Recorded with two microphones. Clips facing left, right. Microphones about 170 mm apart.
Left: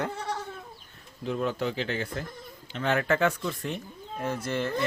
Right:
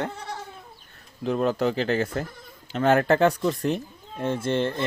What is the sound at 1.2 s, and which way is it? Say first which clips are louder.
Speech: right 6 dB; 40° right (ahead or behind).